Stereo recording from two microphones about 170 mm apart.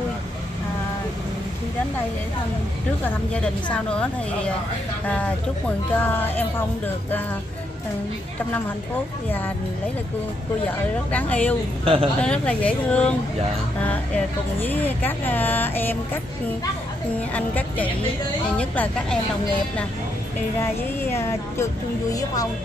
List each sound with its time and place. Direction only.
3.0 s speech: 5° left (ahead or behind)
11.1 s speech: 10° left (ahead or behind)
11.8 s speech: 35° right (ahead or behind)
12.2 s speech: 5° left (ahead or behind)
17.3 s speech: 10° left (ahead or behind)
20.6 s speech: 15° left (ahead or behind)